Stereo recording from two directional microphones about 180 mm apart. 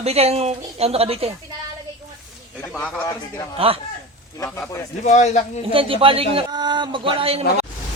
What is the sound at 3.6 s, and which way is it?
Speech, 30° right (ahead or behind).